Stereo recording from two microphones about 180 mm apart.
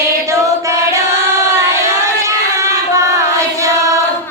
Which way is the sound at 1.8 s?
15° right (ahead or behind).